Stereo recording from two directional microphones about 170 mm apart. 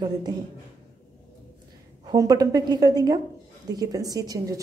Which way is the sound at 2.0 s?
20° right (ahead or behind).